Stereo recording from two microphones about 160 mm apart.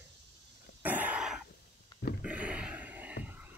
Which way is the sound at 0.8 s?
10° right (ahead or behind).